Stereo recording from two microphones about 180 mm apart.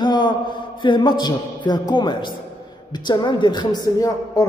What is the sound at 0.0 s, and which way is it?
A man's voice, 25° left (ahead or behind).